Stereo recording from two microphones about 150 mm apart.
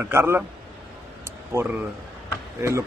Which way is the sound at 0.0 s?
15° right (ahead or behind).